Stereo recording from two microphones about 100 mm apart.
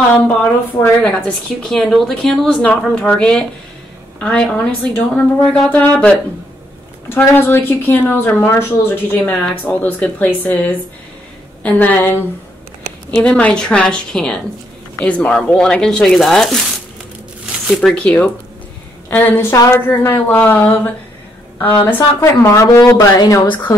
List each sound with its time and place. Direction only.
0.1 s speech: 15° left (ahead or behind)
1.6 s speech: 5° left (ahead or behind)
17.7 s speech: 10° left (ahead or behind); by 23.6 s 45° left (ahead or behind)